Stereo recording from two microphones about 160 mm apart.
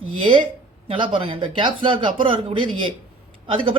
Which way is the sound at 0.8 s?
30° right (ahead or behind).